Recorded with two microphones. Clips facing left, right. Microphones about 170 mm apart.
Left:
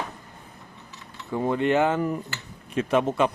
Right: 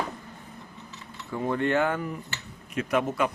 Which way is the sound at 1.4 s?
20° left (ahead or behind).